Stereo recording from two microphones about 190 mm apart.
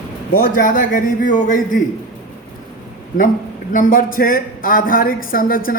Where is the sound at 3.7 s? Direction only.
45° left (ahead or behind).